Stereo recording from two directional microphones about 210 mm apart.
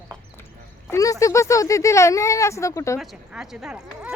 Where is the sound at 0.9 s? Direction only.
15° left (ahead or behind).